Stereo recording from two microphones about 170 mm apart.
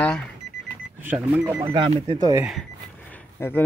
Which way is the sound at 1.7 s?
30° right (ahead or behind).